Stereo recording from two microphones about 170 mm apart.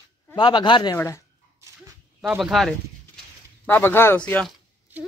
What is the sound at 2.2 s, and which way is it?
Speech, 5° right (ahead or behind).